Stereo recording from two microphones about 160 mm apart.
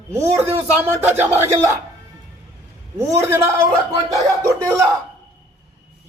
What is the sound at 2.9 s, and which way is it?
Speech, 20° right (ahead or behind).